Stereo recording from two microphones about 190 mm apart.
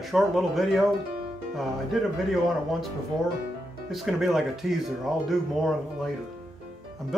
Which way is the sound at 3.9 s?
Centre (ahead or behind).